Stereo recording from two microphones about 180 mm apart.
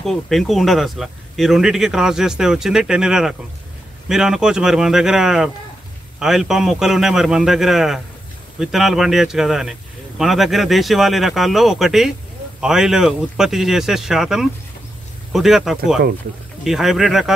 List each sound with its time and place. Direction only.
0.0 s speech: centre (ahead or behind)